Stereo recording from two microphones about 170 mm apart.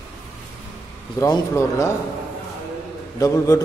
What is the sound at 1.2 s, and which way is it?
Speech, 20° left (ahead or behind).